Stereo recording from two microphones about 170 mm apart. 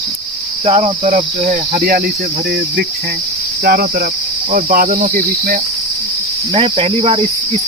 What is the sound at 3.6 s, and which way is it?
Cricket, 65° right (ahead or behind).